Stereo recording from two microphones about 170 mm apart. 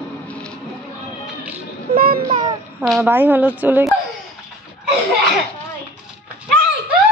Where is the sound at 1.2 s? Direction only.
10° right (ahead or behind).